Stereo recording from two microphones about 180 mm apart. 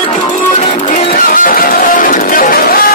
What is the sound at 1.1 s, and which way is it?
Music, 50° left (ahead or behind).